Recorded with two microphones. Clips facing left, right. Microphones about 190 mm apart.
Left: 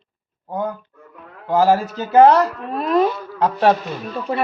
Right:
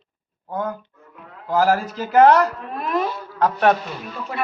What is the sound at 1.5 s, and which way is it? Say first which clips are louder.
Speech: left 3 dB; 20° left (ahead or behind).